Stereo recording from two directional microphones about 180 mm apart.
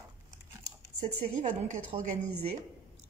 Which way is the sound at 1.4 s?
40° right (ahead or behind).